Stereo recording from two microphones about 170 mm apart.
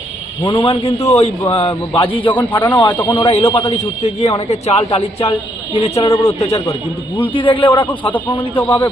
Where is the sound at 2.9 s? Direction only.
10° left (ahead or behind).